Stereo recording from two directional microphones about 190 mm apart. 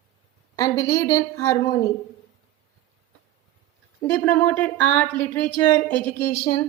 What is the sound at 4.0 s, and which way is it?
Speech, 10° left (ahead or behind).